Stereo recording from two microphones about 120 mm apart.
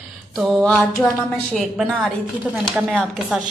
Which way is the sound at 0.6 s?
10° left (ahead or behind).